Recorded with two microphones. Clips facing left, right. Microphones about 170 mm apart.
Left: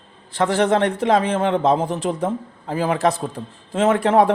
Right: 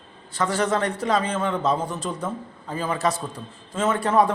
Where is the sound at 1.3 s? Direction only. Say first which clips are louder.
Left 6 dB; 60° left (ahead or behind).